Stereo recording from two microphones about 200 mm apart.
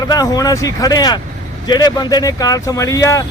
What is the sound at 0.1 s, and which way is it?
Speech, 20° left (ahead or behind).